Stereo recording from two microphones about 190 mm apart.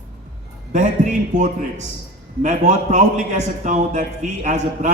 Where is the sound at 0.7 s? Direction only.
40° right (ahead or behind).